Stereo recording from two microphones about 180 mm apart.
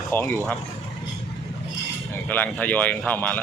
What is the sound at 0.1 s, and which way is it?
Speech, 10° left (ahead or behind).